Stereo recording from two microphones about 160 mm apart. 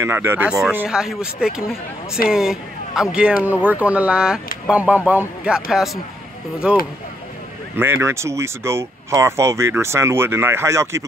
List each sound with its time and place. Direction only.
0.0 s speech: 15° right (ahead or behind)